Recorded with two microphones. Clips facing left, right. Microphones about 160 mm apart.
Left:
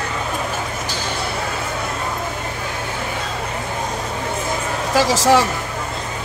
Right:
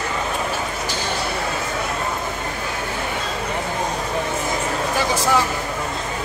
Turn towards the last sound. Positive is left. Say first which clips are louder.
# left 4 dB
turn(degrees=90)